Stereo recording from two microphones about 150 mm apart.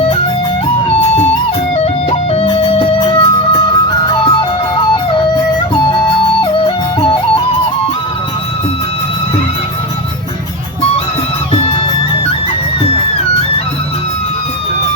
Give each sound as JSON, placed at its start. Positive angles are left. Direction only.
{"t": 1.8, "sound": "music", "side_deg": 40}
{"t": 6.4, "sound": "music", "side_deg": 35}
{"t": 11.5, "sound": "music", "side_deg": 40}